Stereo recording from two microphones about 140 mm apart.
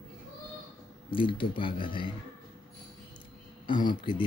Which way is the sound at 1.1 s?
40° left (ahead or behind).